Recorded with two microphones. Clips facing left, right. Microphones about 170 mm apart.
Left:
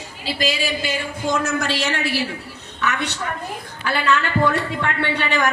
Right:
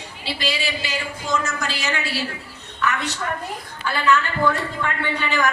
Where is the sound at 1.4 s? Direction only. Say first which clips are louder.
Left 5 dB; 65° left (ahead or behind).